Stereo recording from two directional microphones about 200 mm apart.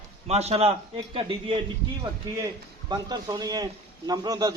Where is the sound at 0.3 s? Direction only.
30° right (ahead or behind).